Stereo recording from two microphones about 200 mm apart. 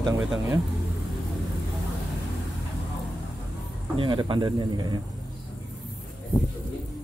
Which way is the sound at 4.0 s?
25° right (ahead or behind).